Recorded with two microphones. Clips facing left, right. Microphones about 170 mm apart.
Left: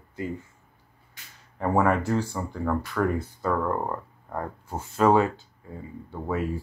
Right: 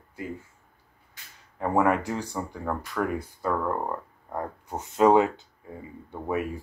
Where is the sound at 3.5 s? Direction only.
5° left (ahead or behind).